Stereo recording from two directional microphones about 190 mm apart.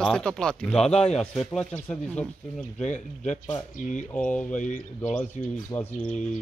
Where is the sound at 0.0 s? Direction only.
5° left (ahead or behind).